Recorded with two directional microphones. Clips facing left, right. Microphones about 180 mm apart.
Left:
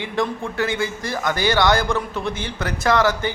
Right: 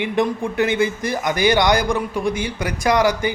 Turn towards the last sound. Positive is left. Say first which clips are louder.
# right 1 dB
turn(degrees=-15)  # may be behind; listen again after turning